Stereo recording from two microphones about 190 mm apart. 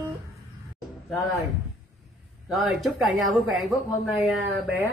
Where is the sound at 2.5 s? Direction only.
Centre (ahead or behind).